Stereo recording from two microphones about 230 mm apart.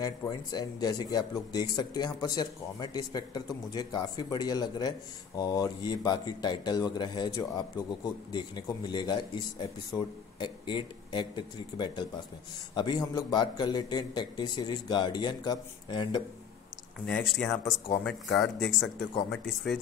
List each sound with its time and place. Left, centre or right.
0.0 s a man's voice: centre
17.0 s speech: centre